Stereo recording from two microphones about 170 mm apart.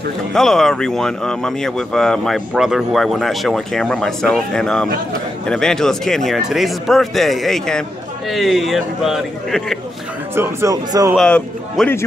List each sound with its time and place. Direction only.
0.3 s speech: centre (ahead or behind)
10.3 s speech: 15° right (ahead or behind)
11.1 s speech: 5° left (ahead or behind)